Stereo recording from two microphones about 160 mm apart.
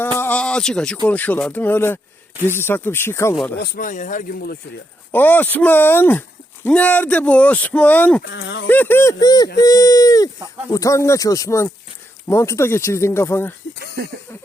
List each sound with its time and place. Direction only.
0.2 s a sound: 10° left (ahead or behind)
1.0 s speech: 10° left (ahead or behind)
3.6 s speech: 55° left (ahead or behind)
5.1 s speech: 10° left (ahead or behind)
8.3 s speech: 90° left
8.6 s speech: 10° left (ahead or behind)
9.2 s speech: 25° left (ahead or behind)
14.0 s a sound: 75° right (ahead or behind)